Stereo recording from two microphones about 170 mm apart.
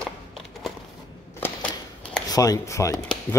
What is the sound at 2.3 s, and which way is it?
Speech, 20° left (ahead or behind).